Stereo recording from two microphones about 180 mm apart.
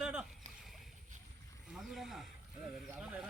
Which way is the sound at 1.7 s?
Centre (ahead or behind).